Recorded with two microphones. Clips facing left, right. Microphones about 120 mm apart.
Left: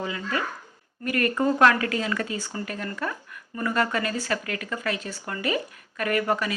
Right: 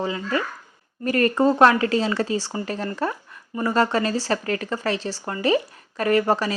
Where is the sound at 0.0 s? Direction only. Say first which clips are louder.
Right 4 dB; 30° right (ahead or behind).